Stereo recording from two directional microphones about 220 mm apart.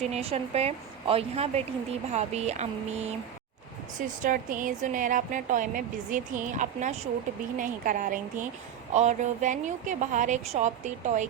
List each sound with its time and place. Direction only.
0.0 s speech: 30° right (ahead or behind)
4.2 s speech: 35° right (ahead or behind)